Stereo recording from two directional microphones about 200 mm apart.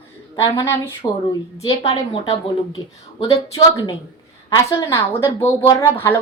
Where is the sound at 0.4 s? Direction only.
15° left (ahead or behind).